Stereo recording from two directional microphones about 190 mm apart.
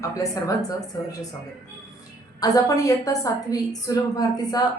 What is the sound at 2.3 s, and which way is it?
A woman's voice, 20° left (ahead or behind).